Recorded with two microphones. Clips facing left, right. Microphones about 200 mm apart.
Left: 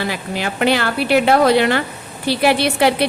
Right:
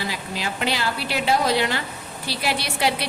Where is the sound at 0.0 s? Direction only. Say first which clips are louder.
Left 6 dB; 60° left (ahead or behind).